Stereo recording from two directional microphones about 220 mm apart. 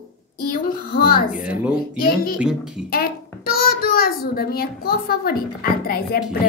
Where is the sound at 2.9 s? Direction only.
45° left (ahead or behind).